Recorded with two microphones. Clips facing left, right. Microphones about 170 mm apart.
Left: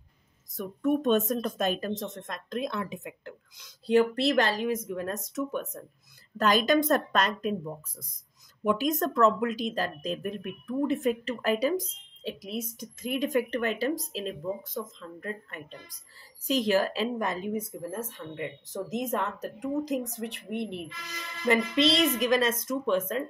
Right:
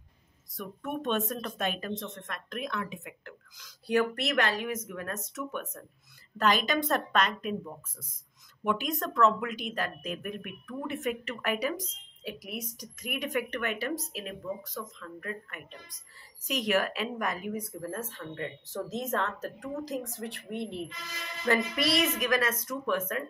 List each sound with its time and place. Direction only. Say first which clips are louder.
0.6 s speech: left 9 dB; 40° left (ahead or behind)
2.0 s a woman's voice: left 3 dB; 25° left (ahead or behind)